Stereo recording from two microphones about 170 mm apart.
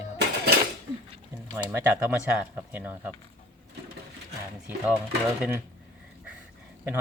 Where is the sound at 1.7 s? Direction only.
10° right (ahead or behind).